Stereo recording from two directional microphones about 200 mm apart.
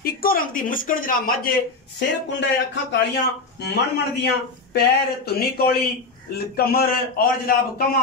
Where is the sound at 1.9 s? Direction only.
60° left (ahead or behind).